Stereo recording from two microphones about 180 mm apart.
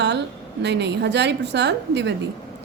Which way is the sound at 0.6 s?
70° right (ahead or behind).